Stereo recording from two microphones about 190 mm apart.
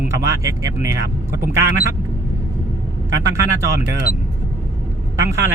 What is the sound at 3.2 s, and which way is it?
Speech, 15° right (ahead or behind).